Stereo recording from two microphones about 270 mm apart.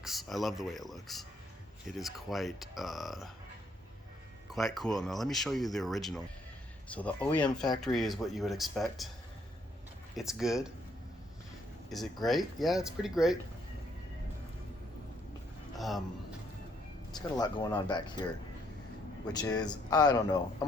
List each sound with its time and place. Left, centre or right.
0.0 s speech: centre
4.5 s speech: centre
10.2 s speech: centre
11.9 s speech: centre
15.7 s a sound: centre
17.2 s speech: centre
19.3 s speech: centre